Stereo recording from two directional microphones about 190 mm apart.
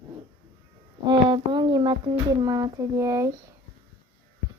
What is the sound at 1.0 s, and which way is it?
Speech, 25° right (ahead or behind).